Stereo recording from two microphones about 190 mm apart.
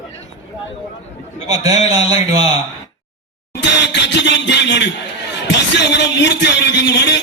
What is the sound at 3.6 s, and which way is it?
Music, 70° left (ahead or behind).